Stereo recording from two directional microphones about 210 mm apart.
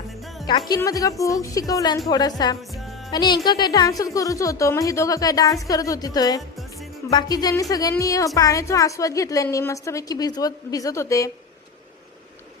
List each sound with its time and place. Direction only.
0.7 s a woman's voice: 15° left (ahead or behind)